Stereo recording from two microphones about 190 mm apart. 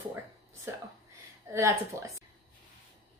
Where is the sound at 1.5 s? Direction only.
15° right (ahead or behind).